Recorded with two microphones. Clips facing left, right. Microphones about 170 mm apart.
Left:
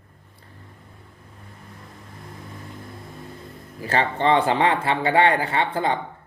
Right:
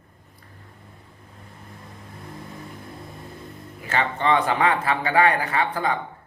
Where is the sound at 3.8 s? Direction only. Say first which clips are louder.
Left 3 dB; 35° left (ahead or behind).